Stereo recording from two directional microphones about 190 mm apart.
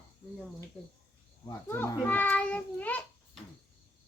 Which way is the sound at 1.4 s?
10° left (ahead or behind).